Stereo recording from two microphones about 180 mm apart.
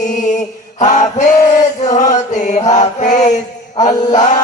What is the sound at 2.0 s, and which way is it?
Chant, 40° left (ahead or behind).